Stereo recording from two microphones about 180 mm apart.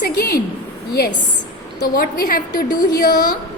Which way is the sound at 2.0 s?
50° left (ahead or behind).